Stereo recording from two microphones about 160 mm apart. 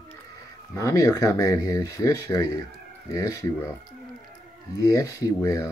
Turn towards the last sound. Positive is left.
turn(degrees=20)  # may be behind; listen again after turning